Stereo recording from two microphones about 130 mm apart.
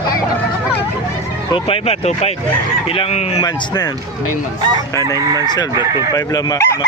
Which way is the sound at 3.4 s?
30° left (ahead or behind).